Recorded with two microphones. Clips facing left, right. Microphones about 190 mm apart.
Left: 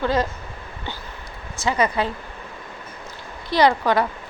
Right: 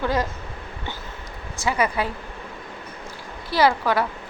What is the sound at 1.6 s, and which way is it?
Speech, 10° right (ahead or behind).